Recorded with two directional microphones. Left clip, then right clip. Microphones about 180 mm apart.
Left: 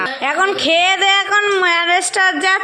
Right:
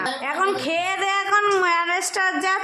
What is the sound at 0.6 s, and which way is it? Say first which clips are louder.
A woman's voice: left 10 dB; 15° left (ahead or behind).